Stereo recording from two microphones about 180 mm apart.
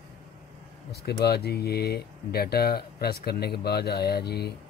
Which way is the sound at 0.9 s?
60° left (ahead or behind).